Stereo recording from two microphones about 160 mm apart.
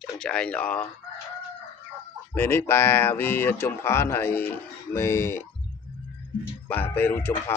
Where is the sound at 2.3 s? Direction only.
15° left (ahead or behind).